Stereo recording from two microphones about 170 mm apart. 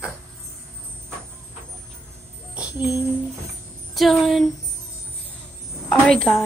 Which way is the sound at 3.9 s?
Centre (ahead or behind).